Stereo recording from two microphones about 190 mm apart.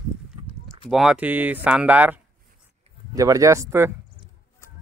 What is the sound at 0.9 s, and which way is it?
Speech, 5° right (ahead or behind).